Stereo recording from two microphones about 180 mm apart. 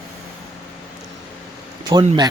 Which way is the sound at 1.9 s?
25° right (ahead or behind).